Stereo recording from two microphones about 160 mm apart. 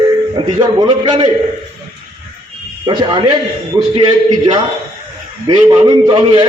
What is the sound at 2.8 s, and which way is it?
Speech, 30° right (ahead or behind).